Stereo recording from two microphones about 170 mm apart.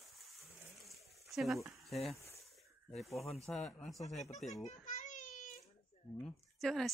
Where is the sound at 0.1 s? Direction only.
Centre (ahead or behind).